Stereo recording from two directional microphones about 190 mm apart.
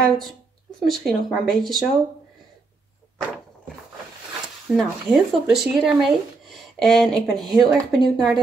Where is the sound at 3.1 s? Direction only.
5° left (ahead or behind).